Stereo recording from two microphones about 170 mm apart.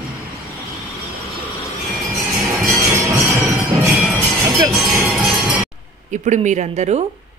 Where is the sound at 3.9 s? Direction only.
Centre (ahead or behind).